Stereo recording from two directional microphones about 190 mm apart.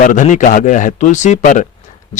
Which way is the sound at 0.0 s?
40° left (ahead or behind).